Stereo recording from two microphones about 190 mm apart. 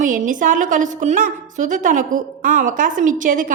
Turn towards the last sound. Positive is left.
turn(degrees=-45)  # may be behind; listen again after turning